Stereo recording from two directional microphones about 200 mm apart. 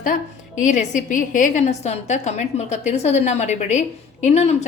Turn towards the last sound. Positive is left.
turn(degrees=35)  # may be behind; listen again after turning